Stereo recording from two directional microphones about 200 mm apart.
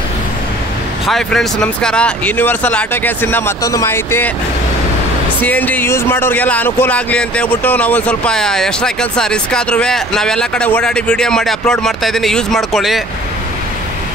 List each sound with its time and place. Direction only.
1.0 s speech: centre (ahead or behind)
5.4 s speech: 10° left (ahead or behind)